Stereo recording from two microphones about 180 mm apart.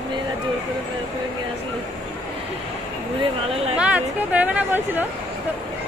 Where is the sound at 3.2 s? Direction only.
35° right (ahead or behind).